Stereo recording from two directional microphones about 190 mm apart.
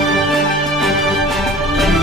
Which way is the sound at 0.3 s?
Centre (ahead or behind).